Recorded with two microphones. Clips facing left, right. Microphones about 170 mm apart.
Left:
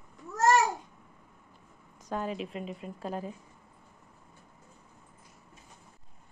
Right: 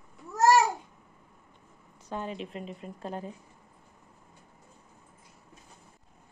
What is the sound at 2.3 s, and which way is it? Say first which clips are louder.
Speech: left 2 dB; 30° right (ahead or behind).